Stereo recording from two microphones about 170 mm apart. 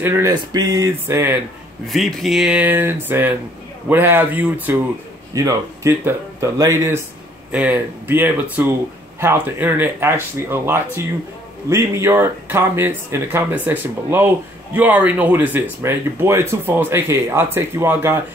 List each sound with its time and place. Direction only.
0.0 s speech: 15° right (ahead or behind)
0.3 s speech: 25° right (ahead or behind)
1.9 s speech: centre (ahead or behind)